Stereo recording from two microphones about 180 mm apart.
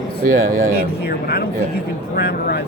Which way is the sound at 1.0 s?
60° left (ahead or behind).